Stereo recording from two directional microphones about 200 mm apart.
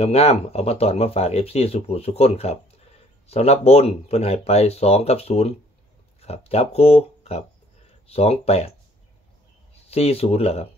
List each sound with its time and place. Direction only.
0.0 s speech: 30° left (ahead or behind)
9.8 s speech: 30° left (ahead or behind)